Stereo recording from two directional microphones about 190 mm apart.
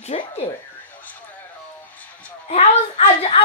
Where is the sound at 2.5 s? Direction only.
35° left (ahead or behind).